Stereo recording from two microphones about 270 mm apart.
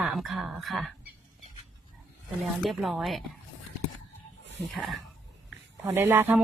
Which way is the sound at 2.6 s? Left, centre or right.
Centre.